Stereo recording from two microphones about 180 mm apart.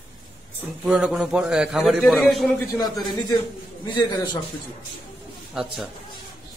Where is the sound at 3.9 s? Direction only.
25° left (ahead or behind).